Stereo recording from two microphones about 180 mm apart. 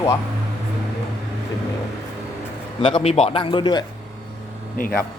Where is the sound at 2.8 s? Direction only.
30° left (ahead or behind).